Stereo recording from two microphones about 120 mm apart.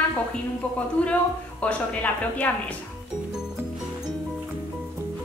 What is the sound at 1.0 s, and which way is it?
A woman's voice, 10° left (ahead or behind).